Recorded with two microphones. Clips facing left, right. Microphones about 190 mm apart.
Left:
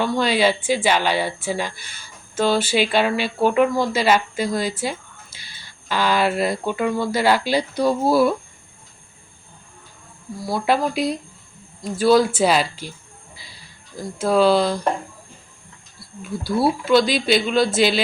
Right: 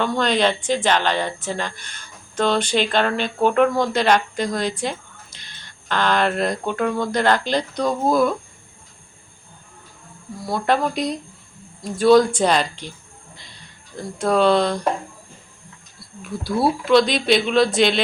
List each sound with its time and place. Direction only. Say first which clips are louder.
0.0 s speech: left 1 dB; 5° left (ahead or behind)
10.4 s speech: even; centre (ahead or behind)
16.0 s speech: left 1 dB; centre (ahead or behind)